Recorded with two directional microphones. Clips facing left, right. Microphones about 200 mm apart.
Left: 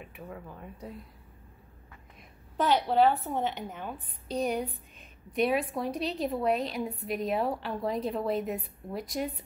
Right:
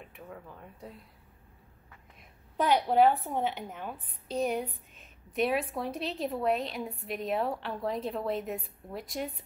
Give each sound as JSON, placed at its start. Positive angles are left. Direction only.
{"t": 0.0, "sound": "a woman's voice", "side_deg": 5}
{"t": 2.5, "sound": "a woman's voice", "side_deg": -10}